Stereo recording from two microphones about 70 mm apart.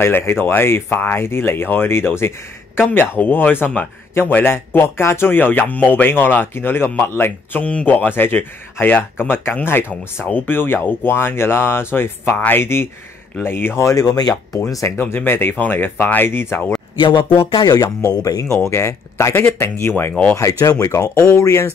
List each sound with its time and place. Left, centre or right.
0.0 s speech: left
14.0 s speech: left
14.7 s speech: left
15.1 s speech: left
17.6 s speech: left
18.1 s speech: left
18.7 s speech: left
20.3 s speech: left